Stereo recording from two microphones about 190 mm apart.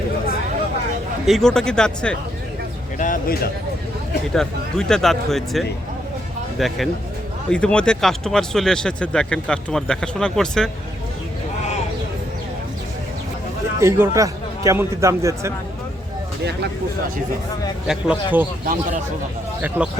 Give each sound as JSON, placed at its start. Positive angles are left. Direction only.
{"t": 1.2, "sound": "speech", "side_deg": 0}
{"t": 3.0, "sound": "speech", "side_deg": 45}
{"t": 4.4, "sound": "speech", "side_deg": 5}
{"t": 13.7, "sound": "a man's voice", "side_deg": -15}
{"t": 17.8, "sound": "a man's voice", "side_deg": -10}
{"t": 19.8, "sound": "a man's voice", "side_deg": -10}